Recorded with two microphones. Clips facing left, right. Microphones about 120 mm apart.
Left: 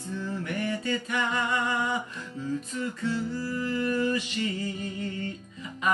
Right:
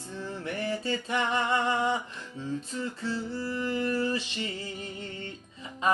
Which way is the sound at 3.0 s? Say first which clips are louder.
Left 4 dB; 30° right (ahead or behind).